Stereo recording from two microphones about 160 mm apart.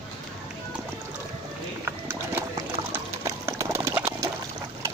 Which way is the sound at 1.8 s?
15° right (ahead or behind).